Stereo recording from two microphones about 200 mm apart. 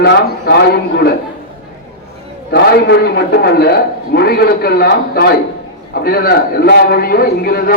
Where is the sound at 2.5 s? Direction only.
55° left (ahead or behind).